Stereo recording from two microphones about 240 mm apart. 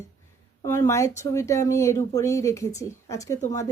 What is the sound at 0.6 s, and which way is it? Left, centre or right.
Speech, centre.